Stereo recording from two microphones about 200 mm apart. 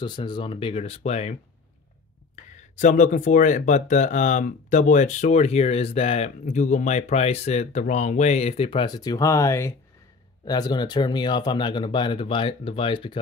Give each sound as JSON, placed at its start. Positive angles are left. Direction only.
{"t": 0.0, "sound": "speech", "side_deg": 25}
{"t": 2.8, "sound": "speech", "side_deg": 40}